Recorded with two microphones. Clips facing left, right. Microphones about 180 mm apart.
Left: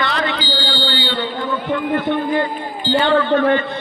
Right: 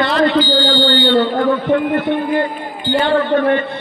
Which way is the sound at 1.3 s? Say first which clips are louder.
Right 7 dB; 60° right (ahead or behind).